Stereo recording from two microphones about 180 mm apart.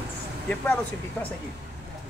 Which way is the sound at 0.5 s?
10° left (ahead or behind).